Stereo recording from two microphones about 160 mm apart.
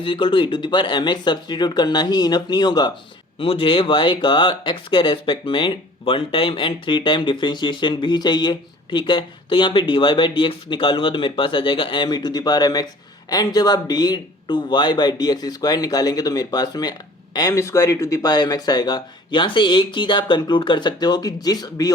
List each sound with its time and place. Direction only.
0.0 s speech: 30° left (ahead or behind)